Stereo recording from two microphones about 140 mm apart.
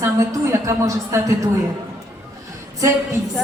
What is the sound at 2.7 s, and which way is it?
Speech, 20° right (ahead or behind).